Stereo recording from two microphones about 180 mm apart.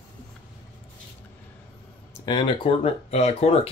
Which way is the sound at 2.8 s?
35° left (ahead or behind).